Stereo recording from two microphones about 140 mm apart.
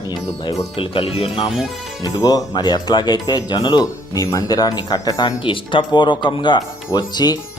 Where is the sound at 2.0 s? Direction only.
25° left (ahead or behind).